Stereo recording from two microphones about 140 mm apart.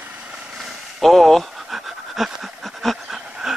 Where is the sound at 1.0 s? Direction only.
Centre (ahead or behind).